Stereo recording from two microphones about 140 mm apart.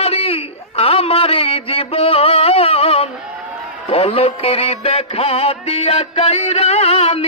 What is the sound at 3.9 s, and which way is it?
Music, 45° left (ahead or behind).